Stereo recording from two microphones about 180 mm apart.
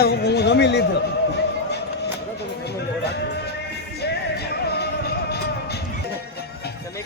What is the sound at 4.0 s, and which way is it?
Music, 65° left (ahead or behind).